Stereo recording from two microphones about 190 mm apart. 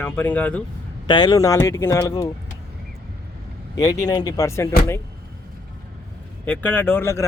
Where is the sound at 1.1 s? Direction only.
20° left (ahead or behind).